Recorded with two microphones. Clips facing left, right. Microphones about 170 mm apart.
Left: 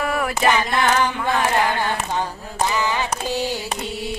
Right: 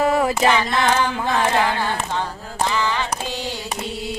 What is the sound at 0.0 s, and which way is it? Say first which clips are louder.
A capella: right 5 dB; 25° right (ahead or behind).